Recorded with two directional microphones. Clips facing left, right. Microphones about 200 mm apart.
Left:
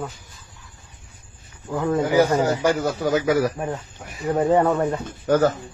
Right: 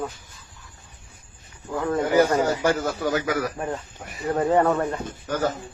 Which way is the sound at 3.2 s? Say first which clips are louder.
Left 6 dB; 30° left (ahead or behind).